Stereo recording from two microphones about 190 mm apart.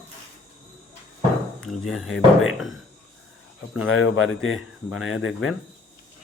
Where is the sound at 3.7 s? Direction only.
90° left.